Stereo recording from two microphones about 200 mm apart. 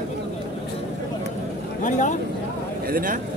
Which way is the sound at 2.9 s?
45° right (ahead or behind).